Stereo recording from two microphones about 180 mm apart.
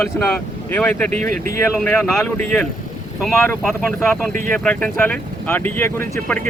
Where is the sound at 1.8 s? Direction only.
5° left (ahead or behind).